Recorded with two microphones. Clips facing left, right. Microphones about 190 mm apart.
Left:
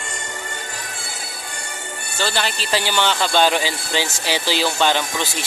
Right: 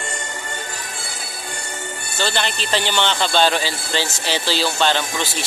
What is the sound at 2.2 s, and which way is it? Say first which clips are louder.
Speech: even; 5° left (ahead or behind).